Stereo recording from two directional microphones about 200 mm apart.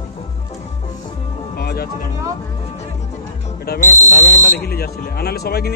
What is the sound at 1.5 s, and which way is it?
Music, 50° left (ahead or behind).